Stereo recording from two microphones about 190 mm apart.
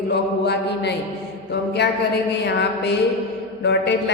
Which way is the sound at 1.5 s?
60° left (ahead or behind).